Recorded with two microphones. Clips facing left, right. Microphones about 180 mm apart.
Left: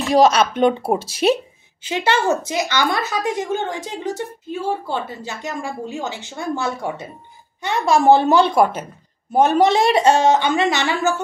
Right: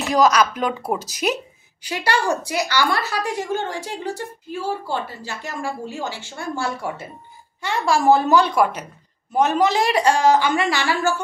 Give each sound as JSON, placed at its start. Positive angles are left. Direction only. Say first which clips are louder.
{"t": 0.1, "sound": "a woman's voice", "louder": "left 3 dB", "side_deg": 25}